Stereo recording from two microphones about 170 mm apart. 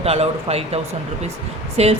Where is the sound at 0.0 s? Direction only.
35° right (ahead or behind).